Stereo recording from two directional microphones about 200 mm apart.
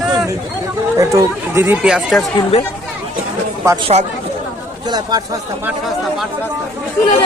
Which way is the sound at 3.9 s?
35° right (ahead or behind).